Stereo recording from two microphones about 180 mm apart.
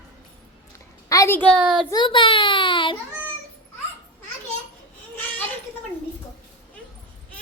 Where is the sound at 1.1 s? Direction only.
15° left (ahead or behind).